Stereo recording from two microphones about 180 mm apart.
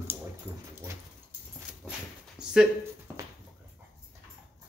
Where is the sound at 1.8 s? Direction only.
5° left (ahead or behind).